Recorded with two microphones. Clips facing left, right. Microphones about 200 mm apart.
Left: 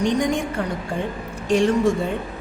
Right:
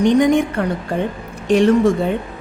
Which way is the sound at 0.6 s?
60° right (ahead or behind).